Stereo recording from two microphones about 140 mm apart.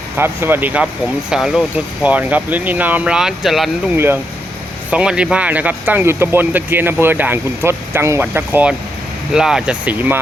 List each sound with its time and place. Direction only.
0.2 s speech: 15° right (ahead or behind)
3.9 s speech: 15° right (ahead or behind)